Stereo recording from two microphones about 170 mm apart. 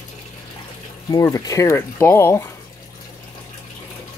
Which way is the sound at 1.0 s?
20° left (ahead or behind).